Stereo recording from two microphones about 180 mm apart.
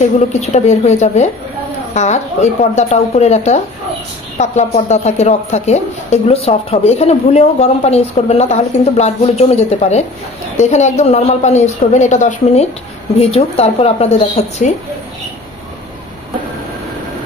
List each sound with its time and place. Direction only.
0.4 s speech: 40° left (ahead or behind)